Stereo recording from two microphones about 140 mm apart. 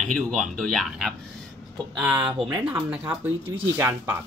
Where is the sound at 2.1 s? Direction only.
30° right (ahead or behind).